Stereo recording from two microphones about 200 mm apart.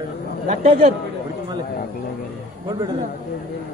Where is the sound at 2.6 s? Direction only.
20° right (ahead or behind).